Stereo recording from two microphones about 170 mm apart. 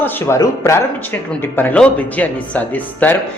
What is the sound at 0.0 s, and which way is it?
Speech, 15° left (ahead or behind).